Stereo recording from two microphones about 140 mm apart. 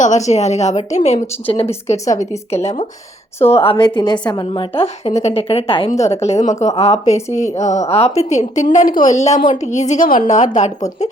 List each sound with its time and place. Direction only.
0.0 s a woman's voice: 55° left (ahead or behind)
3.5 s a woman's voice: 40° left (ahead or behind)
6.2 s a woman's voice: 55° left (ahead or behind)
8.7 s a woman's voice: 70° left (ahead or behind)